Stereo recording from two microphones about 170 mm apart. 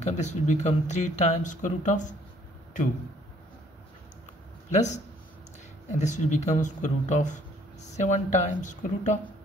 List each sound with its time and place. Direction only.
0.0 s speech: 45° left (ahead or behind)
4.6 s speech: 45° left (ahead or behind)